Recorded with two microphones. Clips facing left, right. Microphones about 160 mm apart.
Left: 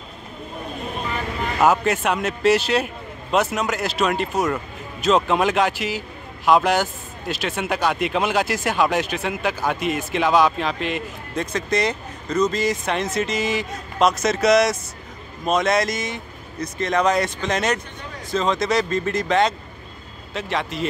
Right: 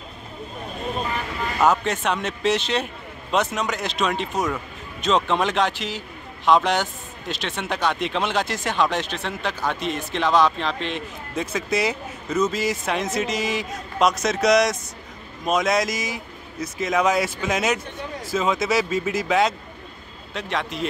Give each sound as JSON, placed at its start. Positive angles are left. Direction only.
{"t": 1.6, "sound": "speech", "side_deg": 5}